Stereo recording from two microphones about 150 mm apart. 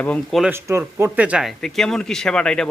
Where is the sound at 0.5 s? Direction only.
15° right (ahead or behind).